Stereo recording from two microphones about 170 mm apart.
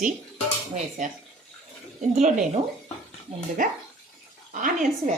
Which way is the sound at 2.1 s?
45° right (ahead or behind).